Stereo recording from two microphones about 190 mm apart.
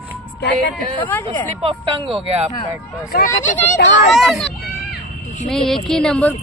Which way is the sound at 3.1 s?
45° left (ahead or behind).